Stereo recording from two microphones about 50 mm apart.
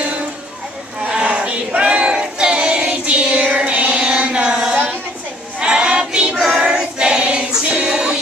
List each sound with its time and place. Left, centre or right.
1.1 s music: right
5.6 s choir: centre
7.6 s music: right